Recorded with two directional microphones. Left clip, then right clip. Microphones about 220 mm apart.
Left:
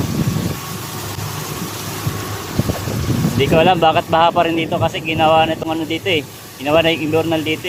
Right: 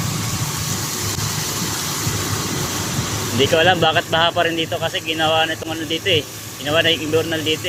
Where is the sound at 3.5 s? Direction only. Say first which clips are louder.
Left 3 dB; 15° left (ahead or behind).